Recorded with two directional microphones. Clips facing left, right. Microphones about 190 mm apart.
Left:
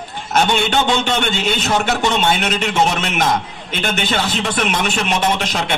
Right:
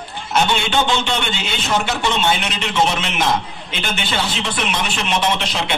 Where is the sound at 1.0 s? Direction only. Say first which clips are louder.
Left 4 dB; 45° left (ahead or behind).